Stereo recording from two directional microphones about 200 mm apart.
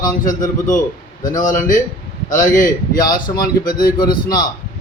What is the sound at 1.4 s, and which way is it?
A man's voice, 40° left (ahead or behind).